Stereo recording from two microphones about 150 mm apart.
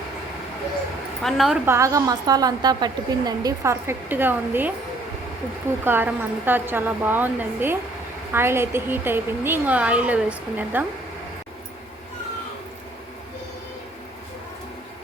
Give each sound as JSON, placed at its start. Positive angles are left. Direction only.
{"t": 1.2, "sound": "a woman's voice", "side_deg": 0}
{"t": 1.6, "sound": "a woman's voice", "side_deg": -20}
{"t": 5.8, "sound": "a woman's voice", "side_deg": -15}